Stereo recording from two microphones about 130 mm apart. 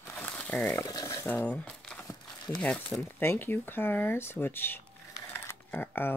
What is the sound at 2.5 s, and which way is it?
Speech, 5° left (ahead or behind).